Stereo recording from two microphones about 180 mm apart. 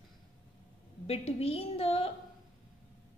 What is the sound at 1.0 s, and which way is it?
A woman's voice, 35° left (ahead or behind).